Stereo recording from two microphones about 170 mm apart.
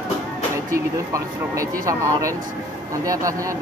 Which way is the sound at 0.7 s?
20° right (ahead or behind).